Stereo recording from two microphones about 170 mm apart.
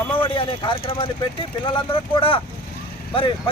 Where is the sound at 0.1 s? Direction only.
30° left (ahead or behind).